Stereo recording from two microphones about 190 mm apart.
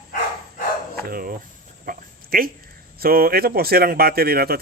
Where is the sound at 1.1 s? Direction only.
50° right (ahead or behind).